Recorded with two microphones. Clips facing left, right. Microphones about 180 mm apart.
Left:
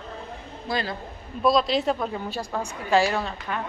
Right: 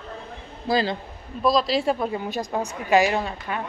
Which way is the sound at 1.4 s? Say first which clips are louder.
Even; centre (ahead or behind).